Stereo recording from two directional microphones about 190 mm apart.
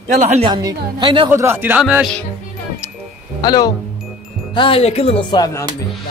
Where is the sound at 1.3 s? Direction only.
10° right (ahead or behind).